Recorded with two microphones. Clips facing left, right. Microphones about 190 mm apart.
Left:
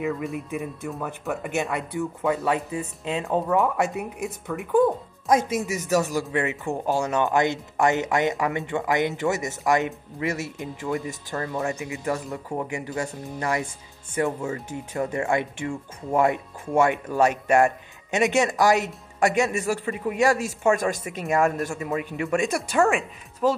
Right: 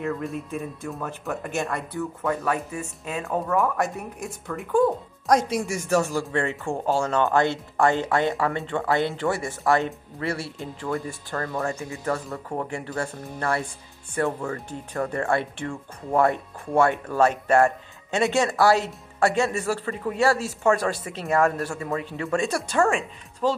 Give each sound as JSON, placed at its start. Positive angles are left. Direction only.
{"t": 0.0, "sound": "speech", "side_deg": 0}
{"t": 2.0, "sound": "speech", "side_deg": 15}
{"t": 5.6, "sound": "speech", "side_deg": 0}
{"t": 5.9, "sound": "speech", "side_deg": 15}